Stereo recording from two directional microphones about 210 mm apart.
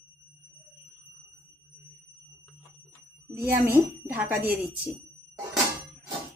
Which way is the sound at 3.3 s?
45° right (ahead or behind).